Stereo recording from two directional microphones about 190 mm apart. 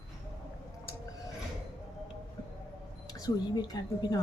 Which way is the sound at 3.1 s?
20° left (ahead or behind).